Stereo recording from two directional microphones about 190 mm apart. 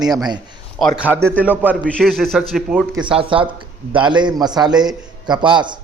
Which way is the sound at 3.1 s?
25° right (ahead or behind).